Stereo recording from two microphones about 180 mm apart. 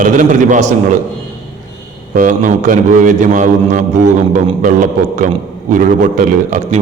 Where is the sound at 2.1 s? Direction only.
45° right (ahead or behind).